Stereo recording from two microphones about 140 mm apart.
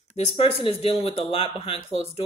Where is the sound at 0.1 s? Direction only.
45° left (ahead or behind).